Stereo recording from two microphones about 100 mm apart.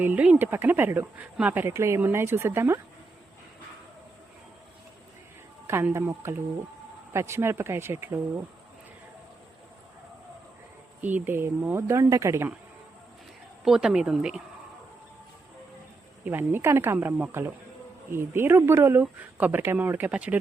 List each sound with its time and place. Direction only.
0.0 s speech: 15° right (ahead or behind)
5.6 s speech: 25° right (ahead or behind)
11.0 s speech: 20° right (ahead or behind)
13.7 s speech: 5° right (ahead or behind)
16.2 s speech: 20° right (ahead or behind)